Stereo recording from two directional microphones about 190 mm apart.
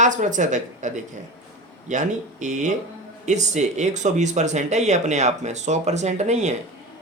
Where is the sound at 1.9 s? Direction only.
40° right (ahead or behind).